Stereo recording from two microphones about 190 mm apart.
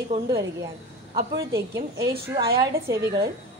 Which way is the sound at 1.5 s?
15° right (ahead or behind).